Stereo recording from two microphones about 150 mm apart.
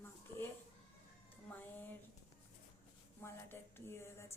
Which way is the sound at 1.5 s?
10° left (ahead or behind).